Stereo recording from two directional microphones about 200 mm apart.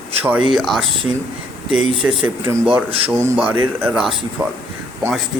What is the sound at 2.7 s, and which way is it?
Speech, 25° right (ahead or behind).